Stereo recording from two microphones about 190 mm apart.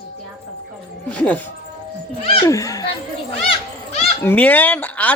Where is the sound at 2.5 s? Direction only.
15° left (ahead or behind).